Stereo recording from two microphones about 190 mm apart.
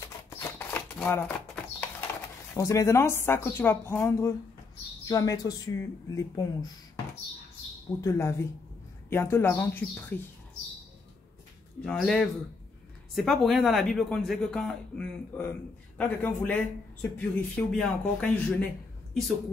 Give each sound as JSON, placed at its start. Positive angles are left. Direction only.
{"t": 0.3, "sound": "typewriter", "side_deg": 15}
{"t": 2.5, "sound": "a man's voice", "side_deg": 15}
{"t": 8.0, "sound": "a man's voice", "side_deg": 15}
{"t": 11.8, "sound": "a man's voice", "side_deg": 5}